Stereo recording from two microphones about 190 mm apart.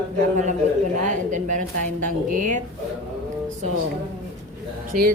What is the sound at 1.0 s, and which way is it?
A woman's voice, 40° right (ahead or behind).